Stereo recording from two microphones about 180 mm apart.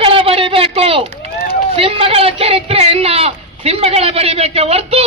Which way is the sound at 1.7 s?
30° right (ahead or behind).